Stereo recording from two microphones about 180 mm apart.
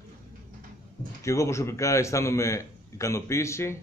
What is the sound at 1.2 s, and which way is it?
A man's voice, 15° left (ahead or behind).